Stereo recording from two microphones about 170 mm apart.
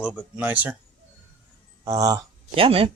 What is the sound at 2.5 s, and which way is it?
Speech, 35° right (ahead or behind).